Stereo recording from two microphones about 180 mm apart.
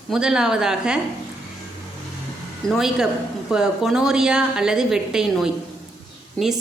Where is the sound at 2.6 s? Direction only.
Centre (ahead or behind).